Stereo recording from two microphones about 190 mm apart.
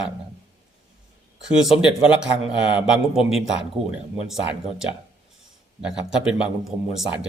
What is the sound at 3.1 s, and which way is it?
A man's voice, centre (ahead or behind).